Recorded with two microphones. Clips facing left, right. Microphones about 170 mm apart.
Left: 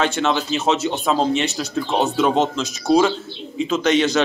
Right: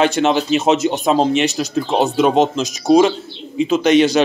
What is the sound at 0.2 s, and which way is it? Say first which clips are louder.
A man's voice: right 5 dB; 20° right (ahead or behind).